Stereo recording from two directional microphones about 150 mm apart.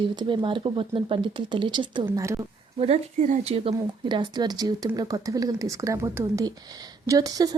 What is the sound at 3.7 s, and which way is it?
Speech, 30° right (ahead or behind).